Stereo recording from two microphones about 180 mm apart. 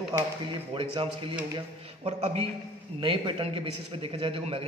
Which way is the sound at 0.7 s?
30° right (ahead or behind).